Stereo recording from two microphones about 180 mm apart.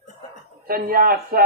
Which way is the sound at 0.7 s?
55° right (ahead or behind).